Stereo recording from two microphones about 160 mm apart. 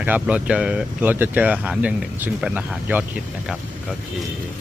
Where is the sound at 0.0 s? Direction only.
10° right (ahead or behind).